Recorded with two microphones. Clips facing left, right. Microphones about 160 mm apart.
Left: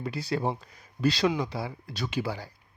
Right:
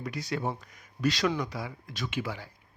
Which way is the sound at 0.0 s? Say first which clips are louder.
Left 3 dB; 30° left (ahead or behind).